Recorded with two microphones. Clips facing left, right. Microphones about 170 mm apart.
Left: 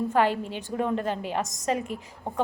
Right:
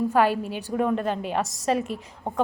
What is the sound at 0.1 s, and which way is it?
A woman's voice, 20° left (ahead or behind).